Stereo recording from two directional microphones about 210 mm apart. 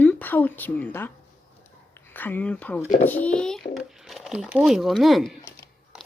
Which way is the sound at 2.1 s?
10° left (ahead or behind).